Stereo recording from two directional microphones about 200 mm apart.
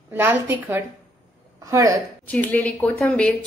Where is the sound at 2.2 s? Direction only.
10° left (ahead or behind).